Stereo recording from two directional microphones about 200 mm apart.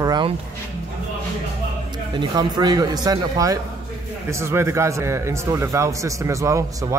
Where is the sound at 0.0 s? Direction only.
20° right (ahead or behind).